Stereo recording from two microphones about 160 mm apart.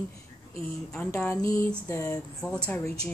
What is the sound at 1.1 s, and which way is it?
Speech, 15° left (ahead or behind).